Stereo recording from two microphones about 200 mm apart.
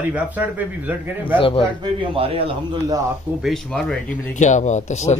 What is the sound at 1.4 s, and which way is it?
Speech, 25° left (ahead or behind).